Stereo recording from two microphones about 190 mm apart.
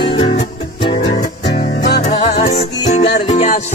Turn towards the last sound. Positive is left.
turn(degrees=35)  # may be behind; listen again after turning